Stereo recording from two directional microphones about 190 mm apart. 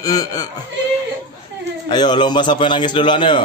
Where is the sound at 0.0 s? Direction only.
20° left (ahead or behind).